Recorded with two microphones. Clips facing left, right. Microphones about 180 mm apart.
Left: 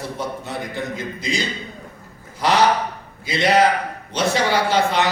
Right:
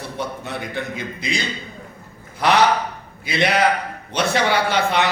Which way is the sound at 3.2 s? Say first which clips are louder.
Left 2 dB; 60° right (ahead or behind).